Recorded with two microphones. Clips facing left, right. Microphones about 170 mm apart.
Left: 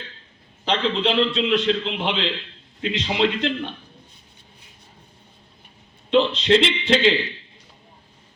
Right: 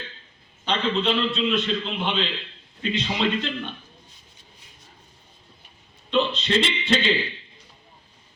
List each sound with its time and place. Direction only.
0.7 s a man's voice: 90° left
2.9 s a man's voice: 80° left
6.1 s a man's voice: 90° left